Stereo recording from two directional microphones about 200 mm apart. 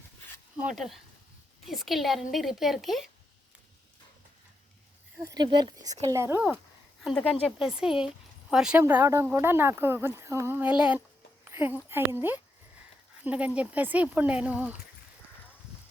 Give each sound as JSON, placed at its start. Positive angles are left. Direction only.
{"t": 0.5, "sound": "speech", "side_deg": -5}
{"t": 5.2, "sound": "speech", "side_deg": -20}